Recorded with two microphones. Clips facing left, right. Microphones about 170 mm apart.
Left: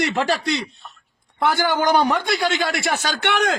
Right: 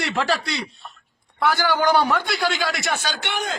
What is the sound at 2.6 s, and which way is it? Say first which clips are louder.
Speech: left 2 dB; 45° left (ahead or behind).